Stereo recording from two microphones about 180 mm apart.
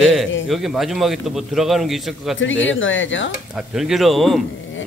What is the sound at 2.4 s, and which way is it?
Speech, 90° left.